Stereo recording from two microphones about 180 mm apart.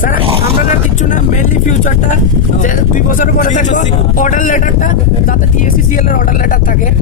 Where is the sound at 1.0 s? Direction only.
45° left (ahead or behind).